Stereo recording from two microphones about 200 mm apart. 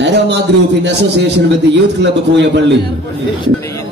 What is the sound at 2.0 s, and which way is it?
Speech, 60° right (ahead or behind).